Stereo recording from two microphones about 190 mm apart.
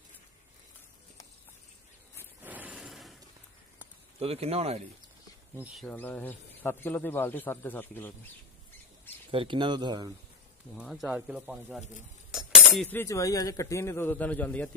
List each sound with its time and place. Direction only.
2.1 s a sound: 10° right (ahead or behind)
4.2 s speech: 30° right (ahead or behind)
5.9 s speech: 10° left (ahead or behind)
9.3 s speech: 25° right (ahead or behind)
10.8 s speech: centre (ahead or behind)
12.3 s a sound: 5° right (ahead or behind)
12.9 s speech: 15° left (ahead or behind)